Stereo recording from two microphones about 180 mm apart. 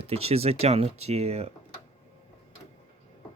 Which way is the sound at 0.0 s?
35° right (ahead or behind).